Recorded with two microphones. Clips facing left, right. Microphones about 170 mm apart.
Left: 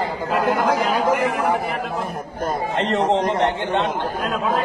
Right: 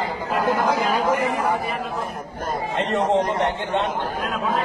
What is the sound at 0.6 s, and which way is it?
Speech, 90° left.